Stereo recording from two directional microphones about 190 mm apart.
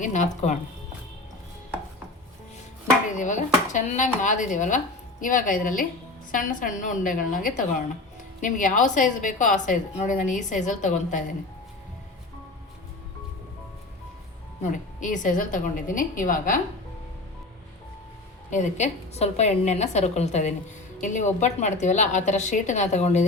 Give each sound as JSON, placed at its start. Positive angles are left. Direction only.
{"t": 0.0, "sound": "a woman's voice", "side_deg": 40}
{"t": 3.2, "sound": "a woman's voice", "side_deg": 40}
{"t": 14.6, "sound": "a woman's voice", "side_deg": 40}
{"t": 18.5, "sound": "a woman's voice", "side_deg": 40}